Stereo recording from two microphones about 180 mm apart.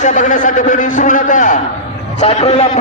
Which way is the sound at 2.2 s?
35° left (ahead or behind).